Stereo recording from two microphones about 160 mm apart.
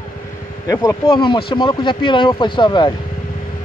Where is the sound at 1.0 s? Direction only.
35° left (ahead or behind).